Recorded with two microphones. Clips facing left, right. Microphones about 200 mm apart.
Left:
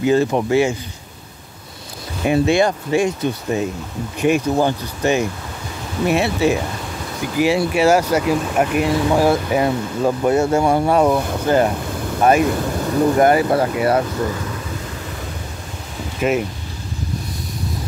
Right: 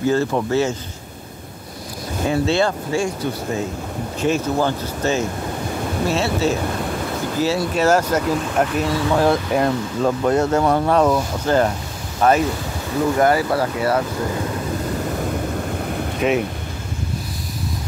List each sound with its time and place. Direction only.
0.0 s speech: 15° left (ahead or behind)
2.2 s speech: 15° left (ahead or behind)
16.2 s speech: centre (ahead or behind)